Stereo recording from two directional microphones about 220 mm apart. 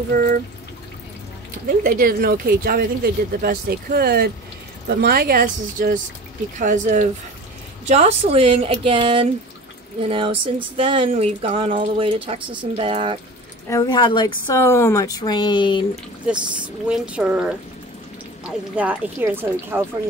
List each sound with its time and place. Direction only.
0.1 s speech: 40° right (ahead or behind)
1.8 s speech: 40° right (ahead or behind); by 13.2 s 25° right (ahead or behind)
13.7 s speech: 20° left (ahead or behind)
16.3 s speech: 5° right (ahead or behind)